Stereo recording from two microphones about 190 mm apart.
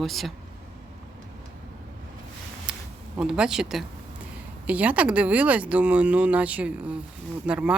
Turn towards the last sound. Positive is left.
turn(degrees=-5)  # may be behind; listen again after turning